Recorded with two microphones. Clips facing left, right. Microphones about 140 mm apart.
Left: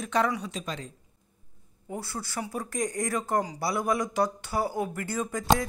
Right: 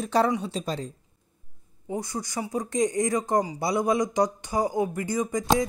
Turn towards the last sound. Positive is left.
turn(degrees=-15)  # may be behind; listen again after turning